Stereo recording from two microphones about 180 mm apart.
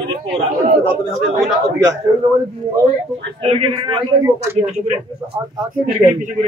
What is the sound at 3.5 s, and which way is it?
Speech, 35° right (ahead or behind).